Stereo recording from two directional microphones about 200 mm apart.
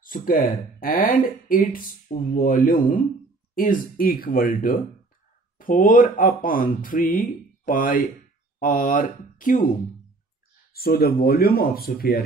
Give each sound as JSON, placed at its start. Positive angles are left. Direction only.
{"t": 0.0, "sound": "speech", "side_deg": 45}
{"t": 10.7, "sound": "speech", "side_deg": 50}